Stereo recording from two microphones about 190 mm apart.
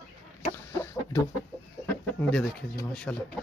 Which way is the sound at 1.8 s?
5° left (ahead or behind).